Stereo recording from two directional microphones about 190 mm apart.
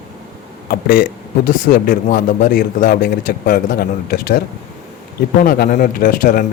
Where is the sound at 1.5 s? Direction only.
45° left (ahead or behind).